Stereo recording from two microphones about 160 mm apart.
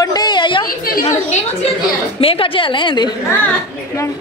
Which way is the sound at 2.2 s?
35° left (ahead or behind).